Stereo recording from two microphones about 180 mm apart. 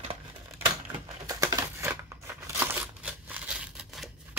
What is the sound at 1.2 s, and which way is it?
Crumpling, 20° right (ahead or behind).